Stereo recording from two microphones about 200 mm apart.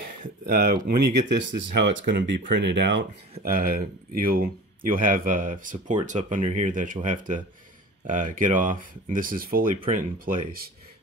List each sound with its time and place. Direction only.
0.2 s speech: 45° right (ahead or behind)
3.4 s speech: 45° right (ahead or behind)